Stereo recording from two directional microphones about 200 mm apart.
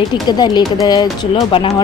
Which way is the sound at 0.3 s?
20° left (ahead or behind).